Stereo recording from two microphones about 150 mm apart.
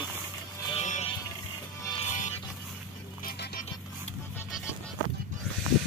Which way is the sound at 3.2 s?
80° left.